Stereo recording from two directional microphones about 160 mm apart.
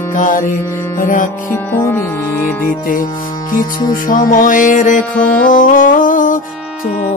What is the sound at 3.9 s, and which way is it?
Music, 60° left (ahead or behind).